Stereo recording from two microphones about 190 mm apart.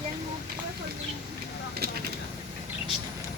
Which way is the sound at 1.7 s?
55° right (ahead or behind).